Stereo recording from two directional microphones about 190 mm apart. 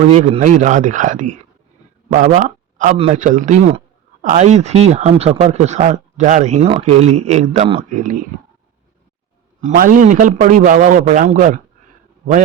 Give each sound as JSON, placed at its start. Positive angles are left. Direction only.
{"t": 0.1, "sound": "a man's voice", "side_deg": -35}
{"t": 9.6, "sound": "a man's voice", "side_deg": -45}